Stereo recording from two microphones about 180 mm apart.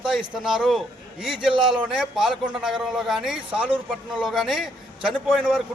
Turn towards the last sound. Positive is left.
turn(degrees=0)  # may be behind; listen again after turning